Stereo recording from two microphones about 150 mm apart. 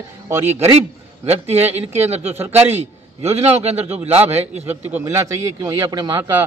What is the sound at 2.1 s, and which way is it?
A man's voice, 45° right (ahead or behind).